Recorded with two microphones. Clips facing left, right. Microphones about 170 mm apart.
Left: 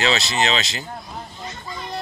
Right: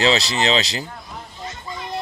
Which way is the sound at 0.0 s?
30° right (ahead or behind).